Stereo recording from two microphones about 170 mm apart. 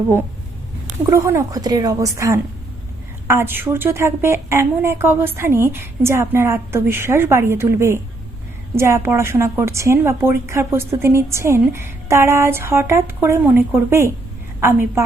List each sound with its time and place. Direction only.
1.1 s a woman's voice: 15° right (ahead or behind)